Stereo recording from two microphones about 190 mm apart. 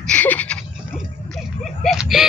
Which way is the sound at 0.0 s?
5° left (ahead or behind).